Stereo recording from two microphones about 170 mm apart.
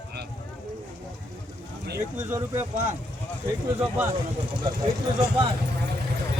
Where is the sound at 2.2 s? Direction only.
15° right (ahead or behind).